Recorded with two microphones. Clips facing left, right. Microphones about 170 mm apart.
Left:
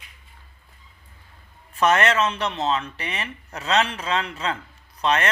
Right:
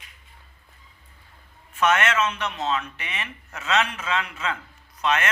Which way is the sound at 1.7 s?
35° left (ahead or behind).